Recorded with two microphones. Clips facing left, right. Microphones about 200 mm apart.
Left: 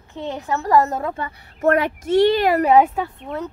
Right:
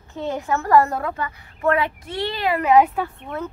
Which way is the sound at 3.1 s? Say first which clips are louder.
Left 1 dB; 15° left (ahead or behind).